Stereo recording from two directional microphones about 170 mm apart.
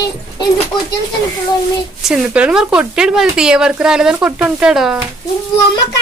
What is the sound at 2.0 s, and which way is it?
A woman's voice, 5° right (ahead or behind).